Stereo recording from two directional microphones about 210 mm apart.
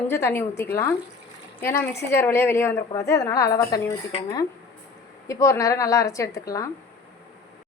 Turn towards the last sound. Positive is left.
turn(degrees=15)  # may be behind; listen again after turning